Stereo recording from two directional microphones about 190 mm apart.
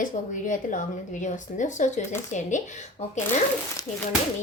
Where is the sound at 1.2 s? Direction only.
40° left (ahead or behind).